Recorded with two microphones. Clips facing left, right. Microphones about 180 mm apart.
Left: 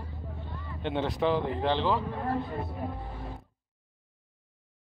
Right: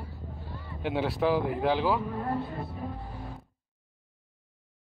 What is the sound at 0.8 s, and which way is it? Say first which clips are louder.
Speech: right 1 dB; 5° right (ahead or behind).